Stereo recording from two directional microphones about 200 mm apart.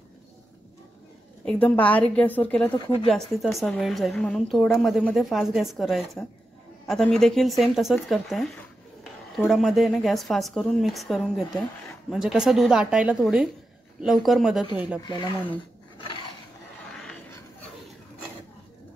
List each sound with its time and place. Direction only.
1.4 s a woman's voice: 5° left (ahead or behind)
15.0 s speech: 20° left (ahead or behind)
16.9 s a sound: centre (ahead or behind)